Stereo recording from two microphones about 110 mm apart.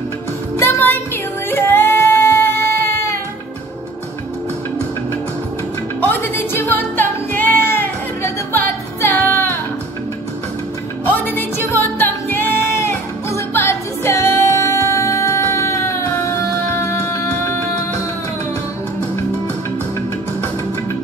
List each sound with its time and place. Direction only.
0.6 s music: 20° left (ahead or behind)
5.9 s music: 20° left (ahead or behind)
11.1 s music: 20° left (ahead or behind)